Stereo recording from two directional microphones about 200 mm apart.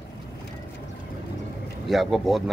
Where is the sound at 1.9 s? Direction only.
Centre (ahead or behind).